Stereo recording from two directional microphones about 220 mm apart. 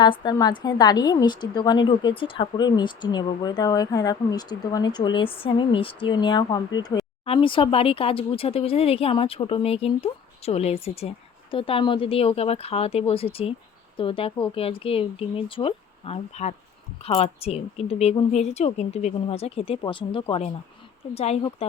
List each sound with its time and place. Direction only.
0.0 s a woman's voice: 20° left (ahead or behind)